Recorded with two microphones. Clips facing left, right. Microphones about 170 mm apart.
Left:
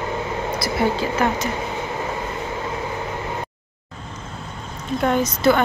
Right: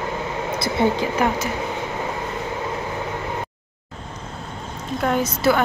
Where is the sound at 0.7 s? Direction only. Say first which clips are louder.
Right 1 dB; 15° right (ahead or behind).